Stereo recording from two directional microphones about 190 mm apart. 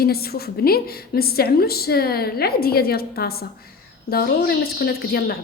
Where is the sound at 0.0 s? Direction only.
55° left (ahead or behind).